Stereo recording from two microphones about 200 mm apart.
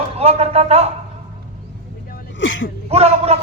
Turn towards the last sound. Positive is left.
turn(degrees=-30)  # may be behind; listen again after turning